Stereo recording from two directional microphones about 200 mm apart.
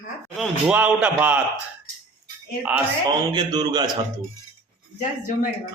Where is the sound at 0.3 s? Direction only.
5° right (ahead or behind).